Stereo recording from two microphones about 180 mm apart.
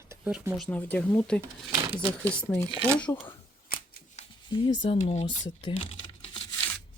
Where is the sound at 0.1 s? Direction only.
10° right (ahead or behind); by 2.6 s 10° left (ahead or behind).